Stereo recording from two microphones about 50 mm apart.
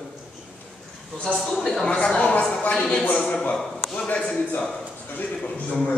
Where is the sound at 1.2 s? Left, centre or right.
Centre.